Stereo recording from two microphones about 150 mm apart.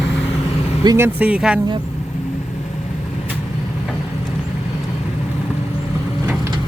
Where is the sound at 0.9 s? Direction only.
15° right (ahead or behind).